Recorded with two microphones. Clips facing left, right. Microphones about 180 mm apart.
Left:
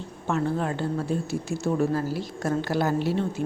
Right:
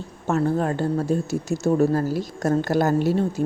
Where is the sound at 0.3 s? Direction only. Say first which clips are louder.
Right 4 dB; 40° right (ahead or behind).